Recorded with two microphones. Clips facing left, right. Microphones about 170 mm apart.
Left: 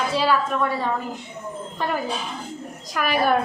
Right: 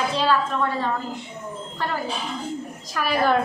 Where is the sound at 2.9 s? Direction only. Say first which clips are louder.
Left 1 dB; 15° left (ahead or behind).